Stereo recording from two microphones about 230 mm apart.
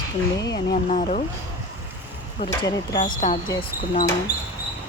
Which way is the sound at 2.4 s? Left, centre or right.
Centre.